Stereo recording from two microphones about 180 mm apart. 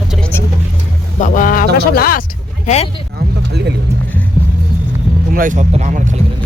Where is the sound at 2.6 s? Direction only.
35° left (ahead or behind).